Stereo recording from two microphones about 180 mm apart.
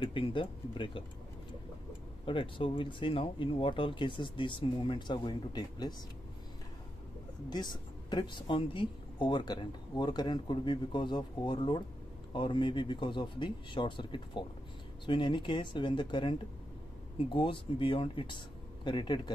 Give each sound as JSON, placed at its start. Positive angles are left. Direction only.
{"t": 0.0, "sound": "speech", "side_deg": 30}
{"t": 2.2, "sound": "speech", "side_deg": 30}
{"t": 7.4, "sound": "speech", "side_deg": 25}